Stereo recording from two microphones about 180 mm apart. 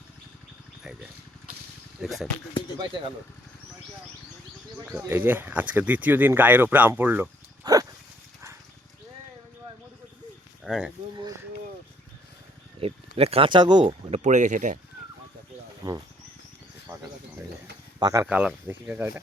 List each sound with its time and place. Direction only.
2.0 s speech: centre (ahead or behind)
4.9 s speech: 10° right (ahead or behind)
7.6 s dog: 20° right (ahead or behind)
10.6 s livestock: 5° right (ahead or behind)
12.8 s speech: 35° right (ahead or behind)
15.8 s speech: 25° right (ahead or behind)
16.9 s insect: 10° right (ahead or behind)
18.0 s speech: 20° right (ahead or behind)
18.3 s speech: 5° right (ahead or behind)